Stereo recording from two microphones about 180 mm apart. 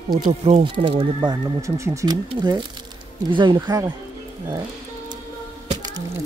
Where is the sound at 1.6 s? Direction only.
15° right (ahead or behind).